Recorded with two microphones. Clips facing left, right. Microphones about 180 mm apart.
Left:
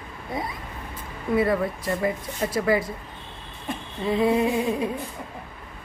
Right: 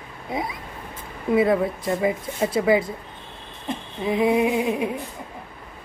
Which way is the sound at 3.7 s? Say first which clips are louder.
Right 1 dB; 15° right (ahead or behind).